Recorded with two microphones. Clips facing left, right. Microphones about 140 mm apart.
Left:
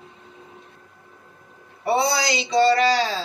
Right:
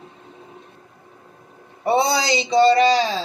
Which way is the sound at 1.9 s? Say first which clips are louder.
Right 3 dB; 25° right (ahead or behind).